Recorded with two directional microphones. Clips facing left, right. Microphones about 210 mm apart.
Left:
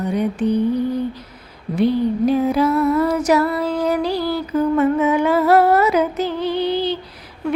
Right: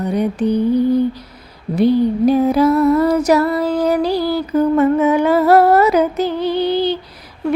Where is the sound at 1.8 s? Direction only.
35° right (ahead or behind).